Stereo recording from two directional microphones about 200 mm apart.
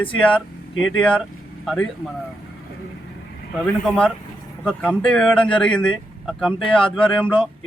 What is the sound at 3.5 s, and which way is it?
Speech, 5° left (ahead or behind).